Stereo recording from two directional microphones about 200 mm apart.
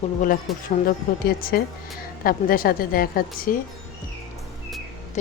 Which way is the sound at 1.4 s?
45° left (ahead or behind).